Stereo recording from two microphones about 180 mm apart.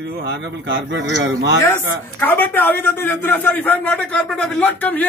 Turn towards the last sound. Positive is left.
turn(degrees=10)  # may be behind; listen again after turning